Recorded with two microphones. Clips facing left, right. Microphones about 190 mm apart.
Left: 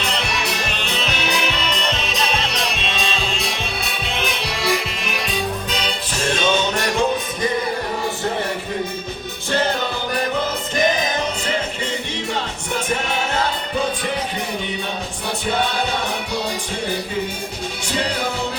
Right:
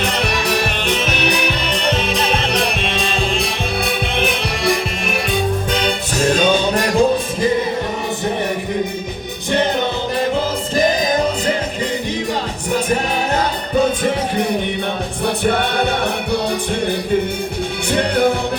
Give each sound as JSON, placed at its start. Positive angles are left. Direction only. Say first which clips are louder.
{"t": 0.6, "sound": "music", "louder": "right 5 dB", "side_deg": -55}
{"t": 12.7, "sound": "music", "louder": "right 5 dB", "side_deg": -40}
{"t": 15.4, "sound": "music", "louder": "right 3 dB", "side_deg": -55}
{"t": 17.9, "sound": "music", "louder": "right 8 dB", "side_deg": -55}